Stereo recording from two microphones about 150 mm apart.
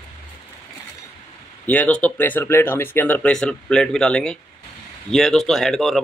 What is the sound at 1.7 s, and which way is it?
A man's voice, 10° left (ahead or behind).